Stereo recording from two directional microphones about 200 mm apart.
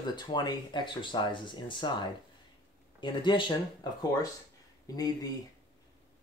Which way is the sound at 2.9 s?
25° left (ahead or behind).